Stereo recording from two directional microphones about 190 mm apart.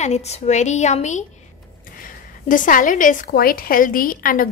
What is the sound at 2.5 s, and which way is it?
A woman's voice, 45° left (ahead or behind).